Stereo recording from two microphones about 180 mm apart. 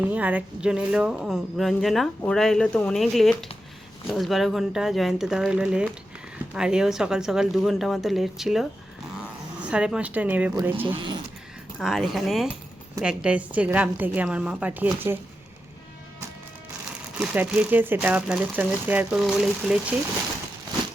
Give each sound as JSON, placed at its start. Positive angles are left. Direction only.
{"t": 0.0, "sound": "speech", "side_deg": -10}
{"t": 10.8, "sound": "speech", "side_deg": -25}
{"t": 11.8, "sound": "speech", "side_deg": 0}
{"t": 17.2, "sound": "speech", "side_deg": -10}